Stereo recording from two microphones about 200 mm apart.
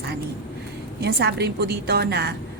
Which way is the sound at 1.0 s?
55° right (ahead or behind).